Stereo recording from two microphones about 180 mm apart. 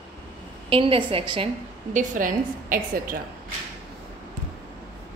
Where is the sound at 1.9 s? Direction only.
45° right (ahead or behind).